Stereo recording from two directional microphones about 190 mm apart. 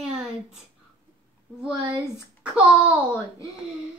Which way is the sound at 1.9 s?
15° left (ahead or behind).